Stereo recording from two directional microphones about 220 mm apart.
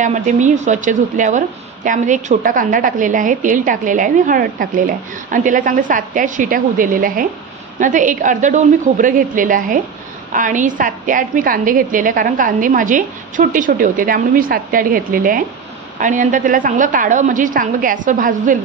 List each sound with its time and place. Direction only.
0.0 s a woman's voice: 35° right (ahead or behind)